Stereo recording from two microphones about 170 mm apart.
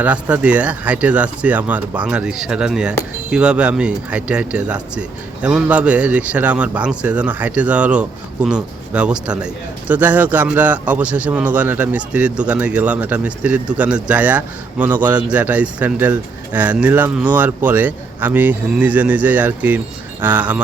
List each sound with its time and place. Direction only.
0.0 s speech: 10° right (ahead or behind)